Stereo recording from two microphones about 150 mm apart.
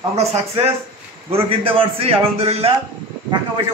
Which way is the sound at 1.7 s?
40° right (ahead or behind).